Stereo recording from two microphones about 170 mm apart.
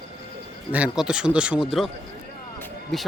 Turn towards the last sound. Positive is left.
turn(degrees=0)  # may be behind; listen again after turning